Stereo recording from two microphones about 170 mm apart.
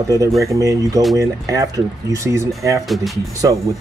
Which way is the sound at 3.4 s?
20° right (ahead or behind).